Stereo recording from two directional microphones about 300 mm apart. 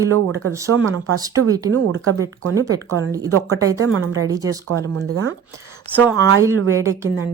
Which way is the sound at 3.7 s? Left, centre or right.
Right.